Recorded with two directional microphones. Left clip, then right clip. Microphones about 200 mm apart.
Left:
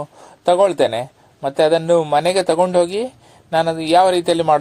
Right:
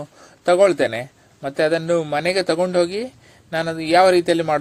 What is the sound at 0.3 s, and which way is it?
Speech, centre (ahead or behind).